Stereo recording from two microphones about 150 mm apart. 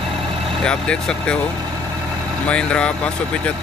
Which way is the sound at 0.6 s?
5° left (ahead or behind).